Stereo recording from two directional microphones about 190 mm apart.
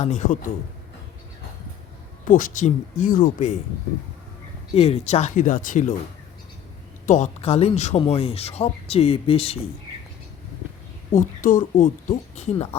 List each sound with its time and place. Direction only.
0.0 s speech: 40° left (ahead or behind)
2.2 s speech: 45° left (ahead or behind)
4.7 s speech: 35° left (ahead or behind)
7.0 s speech: 40° left (ahead or behind)
11.1 s speech: 45° left (ahead or behind)